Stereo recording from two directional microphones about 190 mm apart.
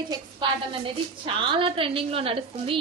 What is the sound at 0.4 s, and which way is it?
A woman's voice, 25° right (ahead or behind).